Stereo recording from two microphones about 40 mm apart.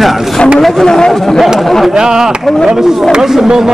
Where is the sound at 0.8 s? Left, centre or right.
Centre.